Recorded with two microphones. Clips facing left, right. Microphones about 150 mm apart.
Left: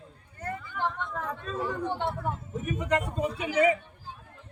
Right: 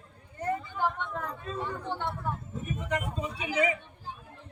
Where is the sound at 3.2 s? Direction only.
50° left (ahead or behind).